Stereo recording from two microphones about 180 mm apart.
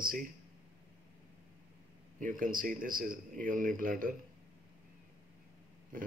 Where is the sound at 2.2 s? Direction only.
50° right (ahead or behind).